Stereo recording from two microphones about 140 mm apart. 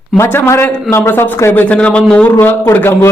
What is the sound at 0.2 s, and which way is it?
Speech, 15° left (ahead or behind).